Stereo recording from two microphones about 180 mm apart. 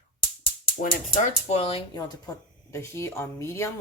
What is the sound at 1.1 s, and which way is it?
Speech, 30° left (ahead or behind).